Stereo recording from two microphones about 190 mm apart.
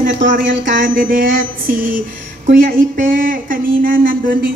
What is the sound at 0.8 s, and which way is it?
Speech, 45° right (ahead or behind).